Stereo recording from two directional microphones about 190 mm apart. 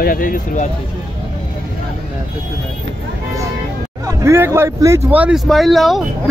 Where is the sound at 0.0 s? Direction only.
50° left (ahead or behind).